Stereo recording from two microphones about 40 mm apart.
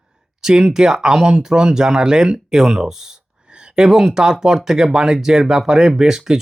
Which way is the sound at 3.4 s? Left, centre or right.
Right.